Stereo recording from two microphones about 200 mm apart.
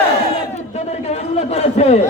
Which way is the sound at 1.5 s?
35° left (ahead or behind).